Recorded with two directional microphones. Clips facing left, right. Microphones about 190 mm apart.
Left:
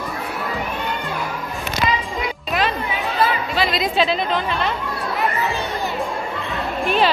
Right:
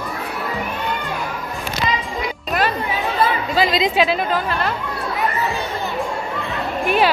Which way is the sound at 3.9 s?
10° right (ahead or behind).